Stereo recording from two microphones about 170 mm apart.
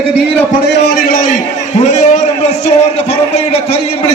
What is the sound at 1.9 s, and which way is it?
A man's voice, 40° left (ahead or behind).